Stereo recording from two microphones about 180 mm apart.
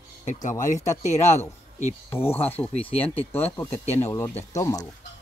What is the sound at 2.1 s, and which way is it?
Speech, 15° left (ahead or behind).